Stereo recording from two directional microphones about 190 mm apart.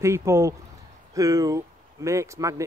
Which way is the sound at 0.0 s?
15° right (ahead or behind).